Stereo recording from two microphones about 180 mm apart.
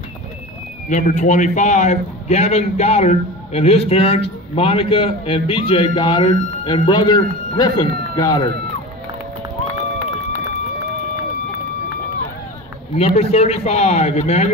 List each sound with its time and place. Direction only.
0.8 s a man's voice: 45° left (ahead or behind); by 8.5 s 20° left (ahead or behind)
12.9 s a man's voice: 35° left (ahead or behind)